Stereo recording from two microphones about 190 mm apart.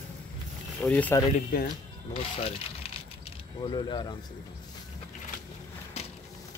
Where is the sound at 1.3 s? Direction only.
45° left (ahead or behind).